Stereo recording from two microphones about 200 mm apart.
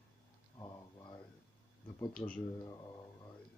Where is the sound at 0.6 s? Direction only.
20° left (ahead or behind).